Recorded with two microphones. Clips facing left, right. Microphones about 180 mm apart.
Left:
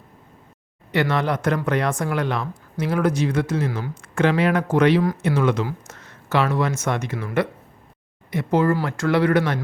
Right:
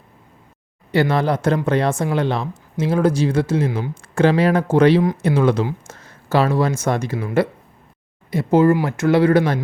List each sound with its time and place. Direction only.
0.9 s speech: 30° right (ahead or behind)